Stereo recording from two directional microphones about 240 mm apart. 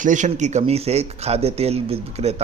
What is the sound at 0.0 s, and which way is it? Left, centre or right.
Speech, right.